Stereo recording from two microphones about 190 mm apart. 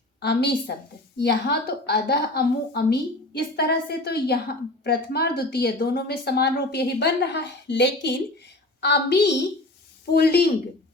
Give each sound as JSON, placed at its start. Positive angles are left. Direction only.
{"t": 0.2, "sound": "a woman's voice", "side_deg": 60}